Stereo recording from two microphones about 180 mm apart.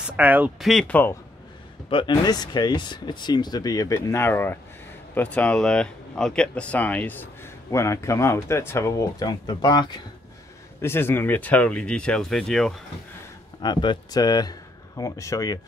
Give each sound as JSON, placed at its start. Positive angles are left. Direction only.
{"t": 0.0, "sound": "speech", "side_deg": -10}
{"t": 1.9, "sound": "speech", "side_deg": 25}
{"t": 10.8, "sound": "speech", "side_deg": 15}
{"t": 13.6, "sound": "speech", "side_deg": 25}